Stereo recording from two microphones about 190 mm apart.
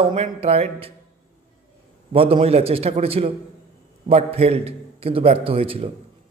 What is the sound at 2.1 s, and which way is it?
A man's voice, 30° right (ahead or behind).